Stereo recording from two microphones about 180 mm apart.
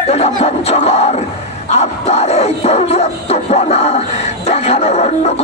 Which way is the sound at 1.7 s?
35° left (ahead or behind).